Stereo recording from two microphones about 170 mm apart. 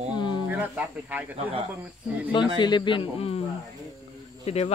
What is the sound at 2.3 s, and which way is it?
A man's voice, 25° left (ahead or behind).